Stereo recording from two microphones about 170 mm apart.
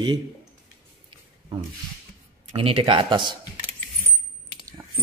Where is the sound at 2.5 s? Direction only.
30° right (ahead or behind).